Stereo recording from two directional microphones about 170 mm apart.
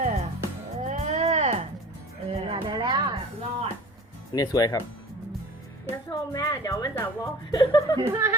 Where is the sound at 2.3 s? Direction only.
35° right (ahead or behind).